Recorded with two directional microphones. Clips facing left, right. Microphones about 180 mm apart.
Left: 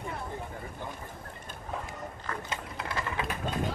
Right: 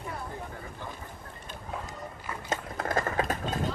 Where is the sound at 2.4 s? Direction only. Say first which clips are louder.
Right 5 dB; 45° right (ahead or behind).